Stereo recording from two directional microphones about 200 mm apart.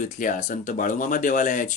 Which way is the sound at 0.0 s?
40° left (ahead or behind).